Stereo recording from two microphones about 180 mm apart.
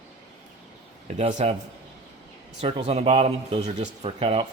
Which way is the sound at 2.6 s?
40° right (ahead or behind).